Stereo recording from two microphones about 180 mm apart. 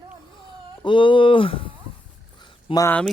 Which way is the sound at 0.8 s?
25° left (ahead or behind).